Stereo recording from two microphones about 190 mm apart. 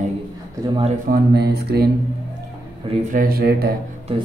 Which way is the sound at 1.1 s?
55° right (ahead or behind).